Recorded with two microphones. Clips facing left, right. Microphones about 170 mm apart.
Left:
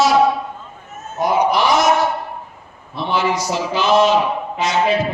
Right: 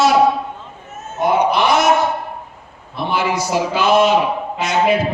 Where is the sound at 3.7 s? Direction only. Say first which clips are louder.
Even; 55° right (ahead or behind).